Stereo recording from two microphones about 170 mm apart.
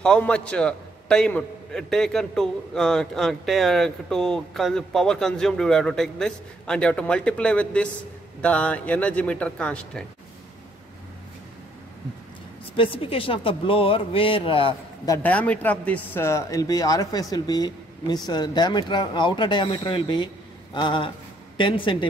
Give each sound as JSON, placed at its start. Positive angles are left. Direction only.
{"t": 0.0, "sound": "a man's voice", "side_deg": 5}
{"t": 12.7, "sound": "speech", "side_deg": 30}
{"t": 15.2, "sound": "a man's voice", "side_deg": 10}